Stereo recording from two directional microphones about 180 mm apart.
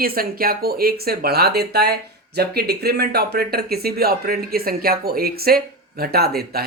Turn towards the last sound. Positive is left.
turn(degrees=-60)  # may be behind; listen again after turning